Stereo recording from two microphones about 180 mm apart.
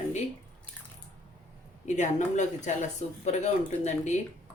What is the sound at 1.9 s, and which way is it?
Speech, 40° left (ahead or behind).